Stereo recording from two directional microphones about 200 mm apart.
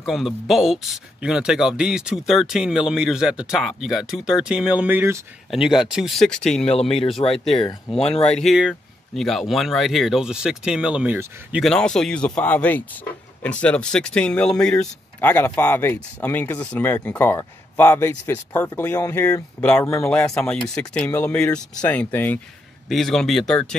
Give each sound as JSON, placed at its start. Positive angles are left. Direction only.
{"t": 0.0, "sound": "speech", "side_deg": 0}
{"t": 6.7, "sound": "speech", "side_deg": 30}
{"t": 8.4, "sound": "speech", "side_deg": 0}